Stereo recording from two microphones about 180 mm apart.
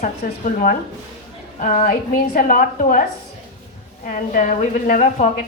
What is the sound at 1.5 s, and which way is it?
A woman's voice, 45° left (ahead or behind).